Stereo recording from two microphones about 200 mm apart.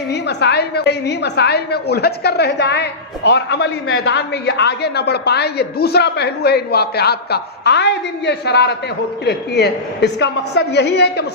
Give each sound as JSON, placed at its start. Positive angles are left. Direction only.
{"t": 0.1, "sound": "a man's voice", "side_deg": 60}